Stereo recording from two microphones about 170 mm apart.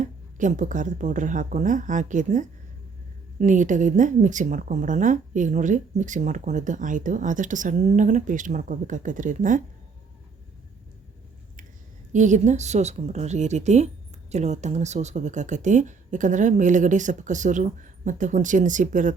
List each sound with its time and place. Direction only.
0.0 s speech: 45° right (ahead or behind)
12.1 s speech: 45° right (ahead or behind)